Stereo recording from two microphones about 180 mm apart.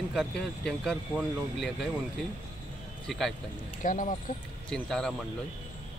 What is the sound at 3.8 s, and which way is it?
Speech, 45° left (ahead or behind).